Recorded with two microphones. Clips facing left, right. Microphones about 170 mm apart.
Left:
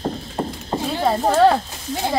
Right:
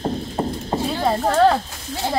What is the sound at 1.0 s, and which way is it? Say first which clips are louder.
Speech: left 1 dB; 5° left (ahead or behind).